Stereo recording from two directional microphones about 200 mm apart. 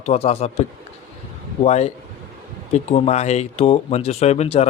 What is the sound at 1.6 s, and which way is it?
Speech, 35° left (ahead or behind).